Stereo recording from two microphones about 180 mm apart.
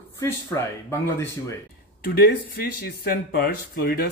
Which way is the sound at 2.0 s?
60° left (ahead or behind).